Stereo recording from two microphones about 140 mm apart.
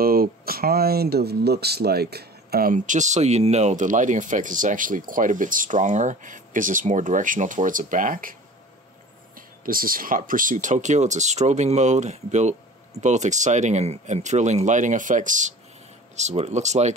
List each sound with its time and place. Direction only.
0.0 s speech: 90° right
2.5 s speech: 80° right
9.7 s speech: 90° right; by 16.9 s 55° right (ahead or behind)